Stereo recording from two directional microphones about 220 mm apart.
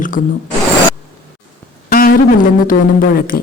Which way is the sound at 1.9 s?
40° left (ahead or behind).